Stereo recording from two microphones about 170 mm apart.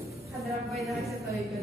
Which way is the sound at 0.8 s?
Centre (ahead or behind).